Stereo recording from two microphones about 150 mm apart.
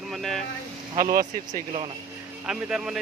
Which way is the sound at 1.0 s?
70° right (ahead or behind).